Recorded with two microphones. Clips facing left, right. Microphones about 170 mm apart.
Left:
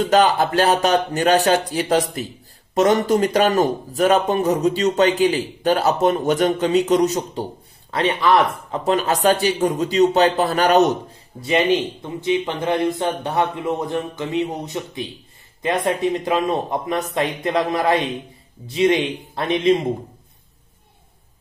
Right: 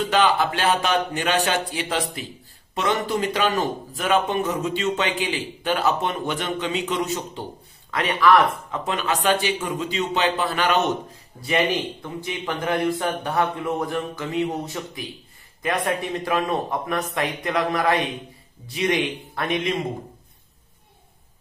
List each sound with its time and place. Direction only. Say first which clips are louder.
0.1 s speech: left 4 dB; 40° left (ahead or behind)
7.9 s speech: left 1 dB; 30° left (ahead or behind)
11.4 s speech: left 4 dB; 20° left (ahead or behind)